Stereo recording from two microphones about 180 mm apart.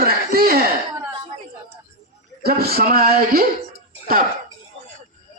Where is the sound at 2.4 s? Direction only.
60° right (ahead or behind).